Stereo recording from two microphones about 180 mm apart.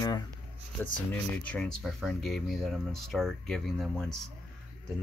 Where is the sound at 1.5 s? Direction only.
5° left (ahead or behind).